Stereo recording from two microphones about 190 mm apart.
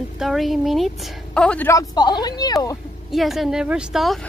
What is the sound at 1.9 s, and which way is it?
Speech, 20° left (ahead or behind).